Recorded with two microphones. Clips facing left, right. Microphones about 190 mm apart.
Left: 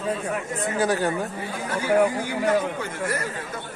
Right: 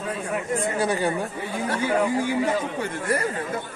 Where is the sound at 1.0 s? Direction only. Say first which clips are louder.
Even; 10° right (ahead or behind).